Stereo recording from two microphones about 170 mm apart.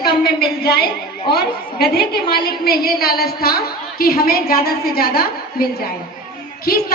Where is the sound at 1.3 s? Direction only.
65° left (ahead or behind).